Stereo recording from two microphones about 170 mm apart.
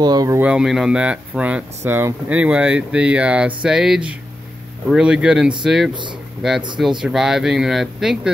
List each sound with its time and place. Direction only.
0.0 s speech: 20° right (ahead or behind)
0.4 s speech: 5° right (ahead or behind)